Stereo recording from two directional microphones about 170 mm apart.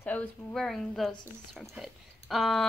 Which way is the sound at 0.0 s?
10° left (ahead or behind).